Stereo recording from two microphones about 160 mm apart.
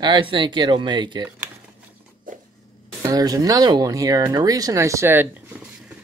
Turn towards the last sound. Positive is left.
turn(degrees=-15)  # may be behind; listen again after turning